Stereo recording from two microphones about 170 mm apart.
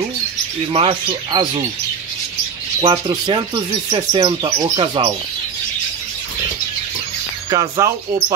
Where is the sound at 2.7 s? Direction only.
25° right (ahead or behind).